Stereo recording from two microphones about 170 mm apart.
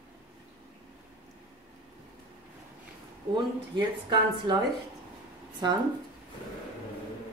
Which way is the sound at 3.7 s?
25° right (ahead or behind).